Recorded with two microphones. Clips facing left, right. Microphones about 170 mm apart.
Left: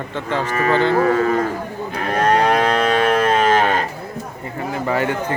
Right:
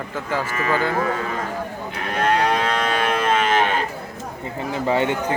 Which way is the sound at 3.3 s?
40° left (ahead or behind).